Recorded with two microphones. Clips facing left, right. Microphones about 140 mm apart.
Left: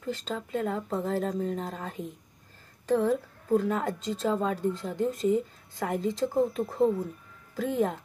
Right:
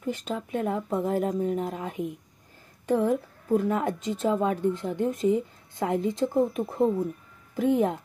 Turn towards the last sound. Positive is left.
turn(degrees=-20)  # may be behind; listen again after turning